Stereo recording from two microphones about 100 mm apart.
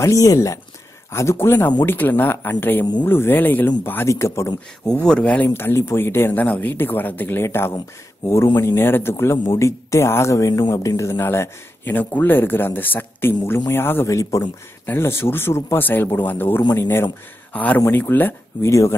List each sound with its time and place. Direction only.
0.0 s speech: 35° left (ahead or behind)
5.0 s speech: 10° left (ahead or behind)
5.5 s speech: 25° left (ahead or behind)